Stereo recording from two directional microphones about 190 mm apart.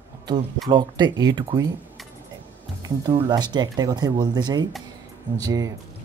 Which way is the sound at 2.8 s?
20° right (ahead or behind).